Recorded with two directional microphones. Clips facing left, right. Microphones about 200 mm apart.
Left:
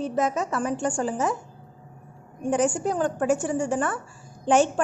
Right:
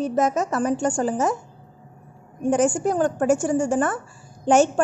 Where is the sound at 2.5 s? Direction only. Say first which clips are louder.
Right 3 dB; 45° right (ahead or behind).